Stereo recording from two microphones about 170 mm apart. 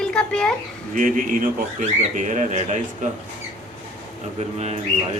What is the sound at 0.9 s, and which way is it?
Speech, 50° right (ahead or behind).